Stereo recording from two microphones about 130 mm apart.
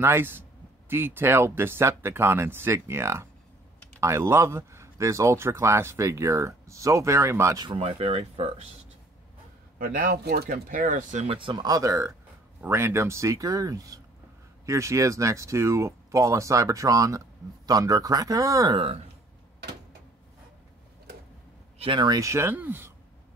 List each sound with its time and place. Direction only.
0.0 s speech: 15° right (ahead or behind)
7.6 s speech: 40° right (ahead or behind)
9.8 s speech: 90° right; by 11.2 s 75° right (ahead or behind)
11.2 s speech: 40° right (ahead or behind)
21.7 s speech: 40° right (ahead or behind); by 22.9 s 15° right (ahead or behind)